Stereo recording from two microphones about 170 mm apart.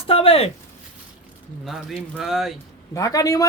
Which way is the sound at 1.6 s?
Centre (ahead or behind).